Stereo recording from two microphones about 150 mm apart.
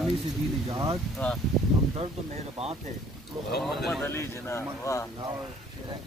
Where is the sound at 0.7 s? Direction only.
20° right (ahead or behind).